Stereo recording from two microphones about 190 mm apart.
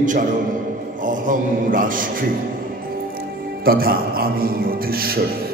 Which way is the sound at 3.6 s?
50° right (ahead or behind).